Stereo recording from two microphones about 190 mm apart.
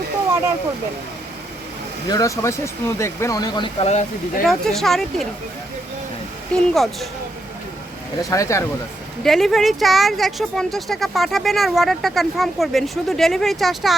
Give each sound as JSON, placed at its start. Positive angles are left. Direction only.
{"t": 2.0, "sound": "speech", "side_deg": 20}
{"t": 4.4, "sound": "speech", "side_deg": 0}
{"t": 6.5, "sound": "speech", "side_deg": 0}
{"t": 8.2, "sound": "speech", "side_deg": 15}
{"t": 9.2, "sound": "speech", "side_deg": 0}